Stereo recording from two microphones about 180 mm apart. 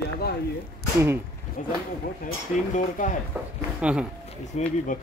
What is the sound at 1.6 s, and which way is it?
Speech, 45° left (ahead or behind).